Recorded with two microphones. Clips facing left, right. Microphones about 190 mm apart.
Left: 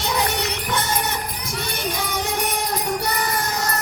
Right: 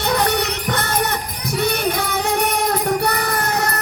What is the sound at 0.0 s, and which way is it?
Music, 60° right (ahead or behind).